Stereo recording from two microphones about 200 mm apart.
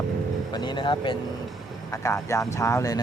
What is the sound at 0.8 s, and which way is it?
A man's voice, 25° left (ahead or behind).